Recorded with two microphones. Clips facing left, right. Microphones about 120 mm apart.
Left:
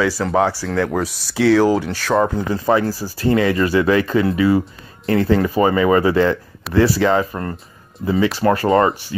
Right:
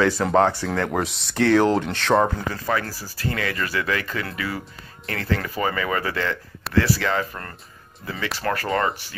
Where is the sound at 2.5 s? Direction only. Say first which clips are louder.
Left 9 dB; 25° left (ahead or behind).